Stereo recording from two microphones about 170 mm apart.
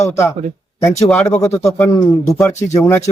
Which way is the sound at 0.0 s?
15° left (ahead or behind).